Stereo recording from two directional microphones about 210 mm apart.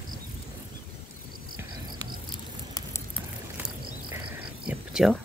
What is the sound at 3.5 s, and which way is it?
Insect, 5° right (ahead or behind).